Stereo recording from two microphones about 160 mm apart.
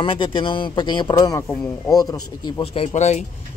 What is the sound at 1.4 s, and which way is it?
Speech, 10° left (ahead or behind).